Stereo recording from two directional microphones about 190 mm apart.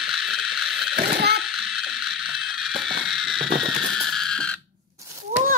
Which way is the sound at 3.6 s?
Centre (ahead or behind).